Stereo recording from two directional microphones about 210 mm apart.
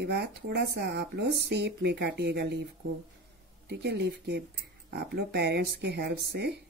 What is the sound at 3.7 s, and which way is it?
Speech, 50° right (ahead or behind).